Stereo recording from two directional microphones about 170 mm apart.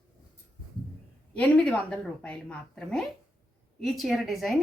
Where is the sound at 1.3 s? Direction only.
5° left (ahead or behind).